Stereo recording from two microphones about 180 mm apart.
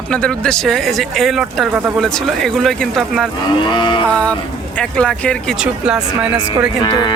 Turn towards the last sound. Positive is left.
turn(degrees=25)  # may be behind; listen again after turning